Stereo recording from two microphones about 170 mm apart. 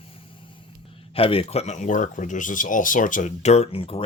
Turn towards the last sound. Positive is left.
turn(degrees=35)  # may be behind; listen again after turning